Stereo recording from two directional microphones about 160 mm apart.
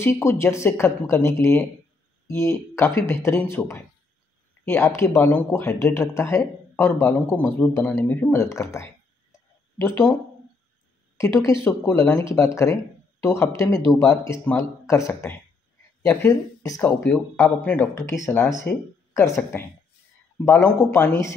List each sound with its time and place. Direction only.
0.0 s speech: 15° left (ahead or behind)
11.1 s a woman's voice: 20° left (ahead or behind)
16.8 s speech: 10° left (ahead or behind)
18.7 s speech: 80° left
20.3 s speech: 15° left (ahead or behind)